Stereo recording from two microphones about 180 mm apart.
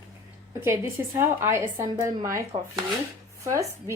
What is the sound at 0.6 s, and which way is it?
A woman's voice, 15° right (ahead or behind).